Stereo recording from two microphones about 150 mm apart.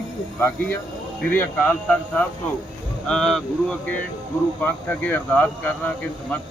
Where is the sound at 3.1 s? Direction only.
5° left (ahead or behind).